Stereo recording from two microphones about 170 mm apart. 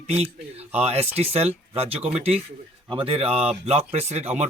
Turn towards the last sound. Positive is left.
turn(degrees=-40)  # may be behind; listen again after turning